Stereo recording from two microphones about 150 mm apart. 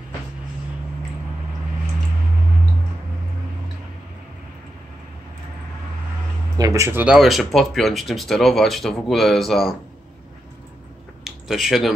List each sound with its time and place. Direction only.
6.6 s speech: 20° right (ahead or behind)
7.2 s speech: centre (ahead or behind)
11.2 s speech: centre (ahead or behind)